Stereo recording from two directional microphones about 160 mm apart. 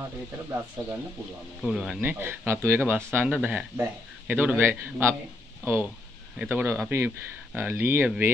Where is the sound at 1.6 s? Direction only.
5° right (ahead or behind).